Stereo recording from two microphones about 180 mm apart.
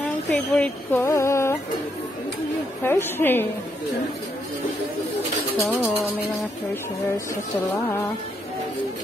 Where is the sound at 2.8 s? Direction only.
10° left (ahead or behind).